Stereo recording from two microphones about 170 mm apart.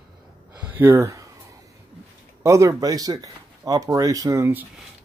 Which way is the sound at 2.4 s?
20° right (ahead or behind).